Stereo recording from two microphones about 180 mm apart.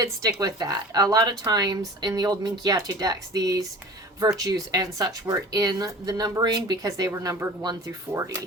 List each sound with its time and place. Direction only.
0.0 s speech: 20° right (ahead or behind)